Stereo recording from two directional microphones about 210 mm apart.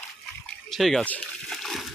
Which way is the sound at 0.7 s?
Centre (ahead or behind).